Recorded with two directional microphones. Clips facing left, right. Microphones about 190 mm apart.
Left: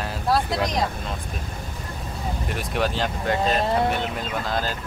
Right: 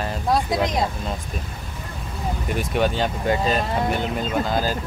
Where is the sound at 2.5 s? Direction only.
Centre (ahead or behind).